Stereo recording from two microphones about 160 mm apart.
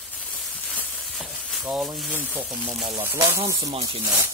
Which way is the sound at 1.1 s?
Centre (ahead or behind).